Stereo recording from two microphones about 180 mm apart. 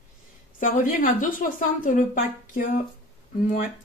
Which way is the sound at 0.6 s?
50° left (ahead or behind).